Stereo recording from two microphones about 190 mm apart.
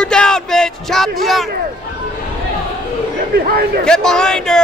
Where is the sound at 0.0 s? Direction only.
5° left (ahead or behind).